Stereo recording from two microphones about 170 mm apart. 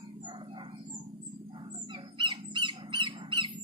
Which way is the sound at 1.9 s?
30° right (ahead or behind).